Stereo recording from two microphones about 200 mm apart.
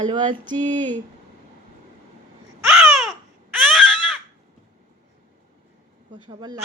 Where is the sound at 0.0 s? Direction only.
25° right (ahead or behind).